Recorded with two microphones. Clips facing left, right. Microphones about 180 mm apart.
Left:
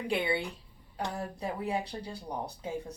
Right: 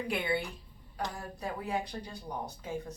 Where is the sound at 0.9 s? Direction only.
30° left (ahead or behind).